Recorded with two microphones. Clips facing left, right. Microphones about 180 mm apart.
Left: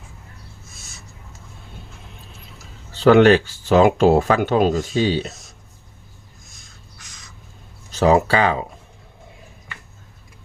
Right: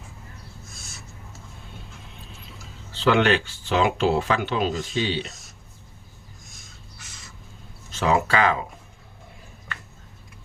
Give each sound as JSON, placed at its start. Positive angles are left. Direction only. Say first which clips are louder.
{"t": 2.9, "sound": "speech", "louder": "left 8 dB", "side_deg": 45}
{"t": 7.9, "sound": "speech", "louder": "left 6 dB", "side_deg": 35}